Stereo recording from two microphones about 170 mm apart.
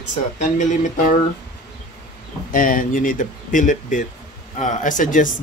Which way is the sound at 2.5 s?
55° left (ahead or behind).